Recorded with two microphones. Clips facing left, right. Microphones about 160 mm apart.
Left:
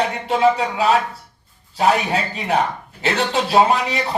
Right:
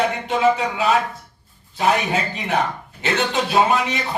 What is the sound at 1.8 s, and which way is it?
Speech, 35° left (ahead or behind).